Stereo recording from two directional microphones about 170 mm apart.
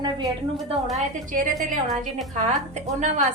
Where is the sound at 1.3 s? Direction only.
55° right (ahead or behind).